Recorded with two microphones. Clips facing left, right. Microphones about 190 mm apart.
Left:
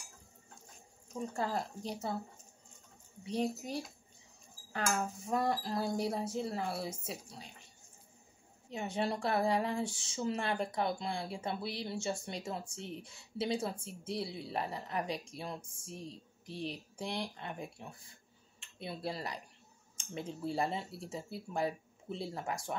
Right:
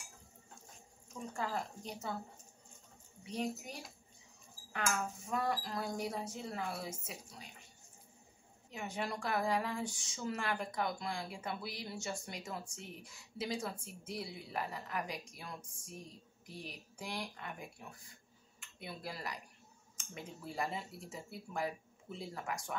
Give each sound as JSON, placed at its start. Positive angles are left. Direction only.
{"t": 1.3, "sound": "speech", "side_deg": 35}
{"t": 4.7, "sound": "speech", "side_deg": 35}
{"t": 8.6, "sound": "a woman's voice", "side_deg": 30}